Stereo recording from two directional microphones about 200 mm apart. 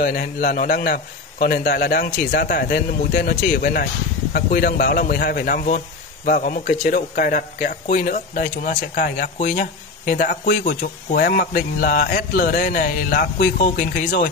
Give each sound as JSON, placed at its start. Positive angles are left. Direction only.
{"t": 0.0, "sound": "a man's voice", "side_deg": 45}